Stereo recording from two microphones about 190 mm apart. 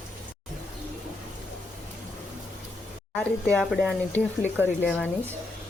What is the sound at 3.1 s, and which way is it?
Speech, 5° left (ahead or behind).